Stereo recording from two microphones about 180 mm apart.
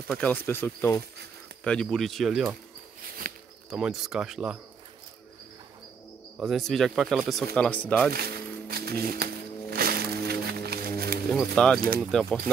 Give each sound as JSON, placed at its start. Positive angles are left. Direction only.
{"t": 0.1, "sound": "speech", "side_deg": 10}
{"t": 3.3, "sound": "a sound", "side_deg": -50}
{"t": 3.7, "sound": "speech", "side_deg": -5}
{"t": 6.4, "sound": "speech", "side_deg": 0}
{"t": 8.1, "sound": "music", "side_deg": -60}
{"t": 11.2, "sound": "speech", "side_deg": 5}